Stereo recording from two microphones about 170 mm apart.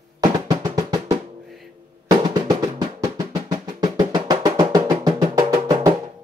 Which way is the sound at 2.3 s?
20° right (ahead or behind).